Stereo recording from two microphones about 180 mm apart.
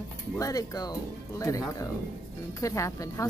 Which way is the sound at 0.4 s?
20° left (ahead or behind).